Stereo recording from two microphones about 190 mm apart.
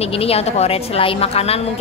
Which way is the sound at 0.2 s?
30° left (ahead or behind).